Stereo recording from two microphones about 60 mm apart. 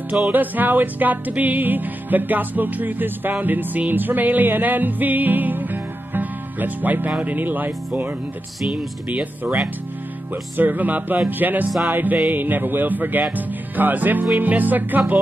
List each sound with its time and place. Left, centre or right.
0.3 s music: right
7.1 s speech: right
9.1 s speech: right
11.2 s music: right
13.7 s speech: right